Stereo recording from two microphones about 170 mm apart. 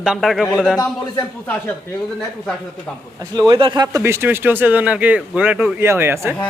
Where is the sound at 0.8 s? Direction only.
15° left (ahead or behind).